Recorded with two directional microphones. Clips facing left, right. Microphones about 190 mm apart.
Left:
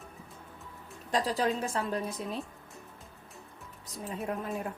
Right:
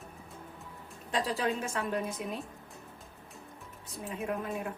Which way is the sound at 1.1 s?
35° left (ahead or behind).